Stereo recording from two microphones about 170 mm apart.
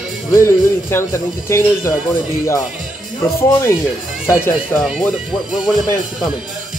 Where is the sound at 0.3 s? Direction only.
15° left (ahead or behind).